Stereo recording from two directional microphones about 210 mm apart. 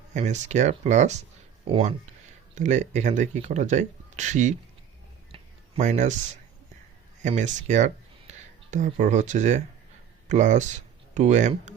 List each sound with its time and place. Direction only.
0.1 s speech: 35° right (ahead or behind)
5.3 s a sound: 30° right (ahead or behind)
7.2 s speech: 35° right (ahead or behind)